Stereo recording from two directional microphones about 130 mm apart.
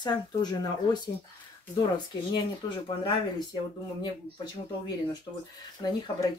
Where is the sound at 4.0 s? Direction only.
35° left (ahead or behind).